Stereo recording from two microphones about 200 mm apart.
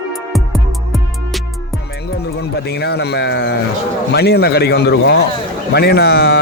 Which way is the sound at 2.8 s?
55° left (ahead or behind).